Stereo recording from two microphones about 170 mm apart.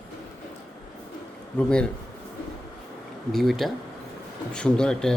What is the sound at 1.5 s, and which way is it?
Speech, 5° left (ahead or behind).